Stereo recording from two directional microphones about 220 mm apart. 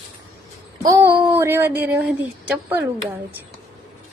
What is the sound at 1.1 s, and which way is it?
Speech, 10° right (ahead or behind).